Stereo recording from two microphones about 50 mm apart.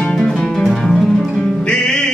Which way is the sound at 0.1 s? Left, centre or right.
Centre.